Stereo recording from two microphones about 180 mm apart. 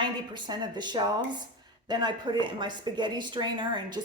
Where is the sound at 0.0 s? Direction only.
25° right (ahead or behind).